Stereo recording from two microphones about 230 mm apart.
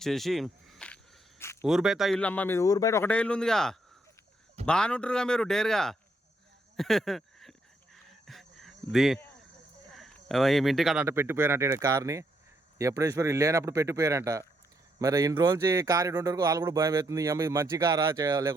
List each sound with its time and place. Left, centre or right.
0.0 s a man's voice: centre
6.7 s a sound: centre
9.9 s speech: centre